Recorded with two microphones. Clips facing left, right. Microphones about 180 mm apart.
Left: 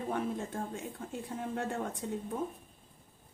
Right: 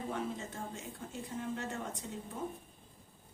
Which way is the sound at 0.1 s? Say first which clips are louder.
Left 4 dB; 55° left (ahead or behind).